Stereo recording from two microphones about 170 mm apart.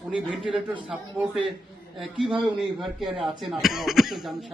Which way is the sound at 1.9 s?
5° right (ahead or behind).